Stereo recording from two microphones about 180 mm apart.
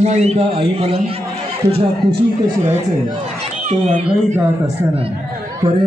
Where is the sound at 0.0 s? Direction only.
40° right (ahead or behind).